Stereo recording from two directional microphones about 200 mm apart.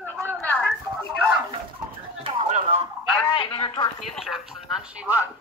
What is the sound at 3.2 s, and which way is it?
Speech, 25° left (ahead or behind).